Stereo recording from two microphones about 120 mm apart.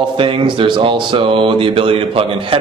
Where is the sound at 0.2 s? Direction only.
45° right (ahead or behind).